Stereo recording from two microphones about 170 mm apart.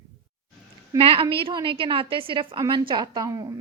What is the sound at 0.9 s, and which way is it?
A woman's voice, 35° right (ahead or behind).